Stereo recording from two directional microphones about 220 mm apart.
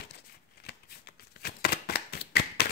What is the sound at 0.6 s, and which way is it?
Shuffling cards, 45° left (ahead or behind).